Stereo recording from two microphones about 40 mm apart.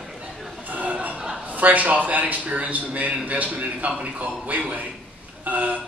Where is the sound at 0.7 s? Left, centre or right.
Right.